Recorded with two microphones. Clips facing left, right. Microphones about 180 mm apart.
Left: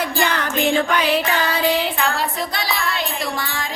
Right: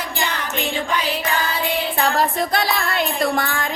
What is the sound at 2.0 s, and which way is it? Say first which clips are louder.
Music: right 3 dB; 50° right (ahead or behind).